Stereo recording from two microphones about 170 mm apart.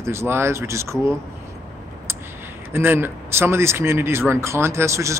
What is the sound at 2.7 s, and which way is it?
Speech, 15° right (ahead or behind).